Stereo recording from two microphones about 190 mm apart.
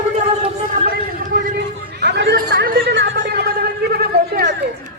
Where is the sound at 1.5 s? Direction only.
60° right (ahead or behind).